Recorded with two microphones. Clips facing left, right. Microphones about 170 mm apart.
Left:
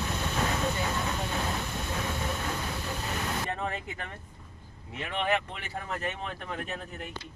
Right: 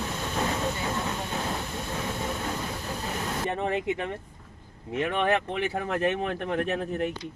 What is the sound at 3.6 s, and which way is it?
Speech, 80° right.